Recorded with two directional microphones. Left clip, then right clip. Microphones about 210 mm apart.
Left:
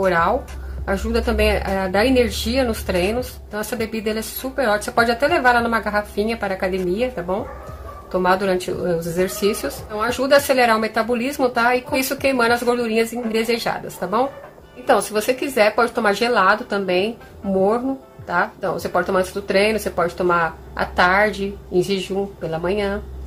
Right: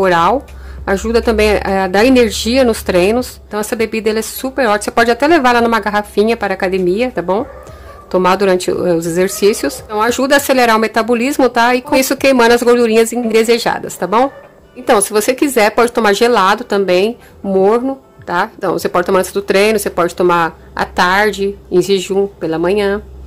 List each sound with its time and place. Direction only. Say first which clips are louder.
0.0 s speech: right 7 dB; 50° right (ahead or behind)
18.2 s speech: right 5 dB; 45° right (ahead or behind)